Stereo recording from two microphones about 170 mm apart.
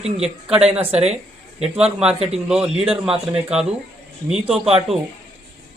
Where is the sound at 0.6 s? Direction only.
40° right (ahead or behind).